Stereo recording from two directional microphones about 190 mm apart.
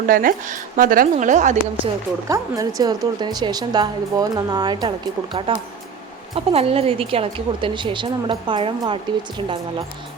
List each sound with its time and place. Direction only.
0.1 s a woman's voice: 45° right (ahead or behind)
2.2 s a woman's voice: 20° right (ahead or behind)